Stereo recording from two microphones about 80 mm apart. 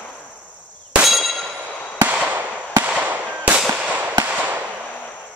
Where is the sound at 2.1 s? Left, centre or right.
Centre.